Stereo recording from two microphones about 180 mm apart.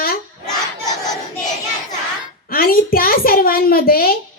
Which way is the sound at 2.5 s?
55° left (ahead or behind).